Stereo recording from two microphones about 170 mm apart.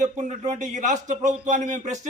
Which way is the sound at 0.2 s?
45° right (ahead or behind).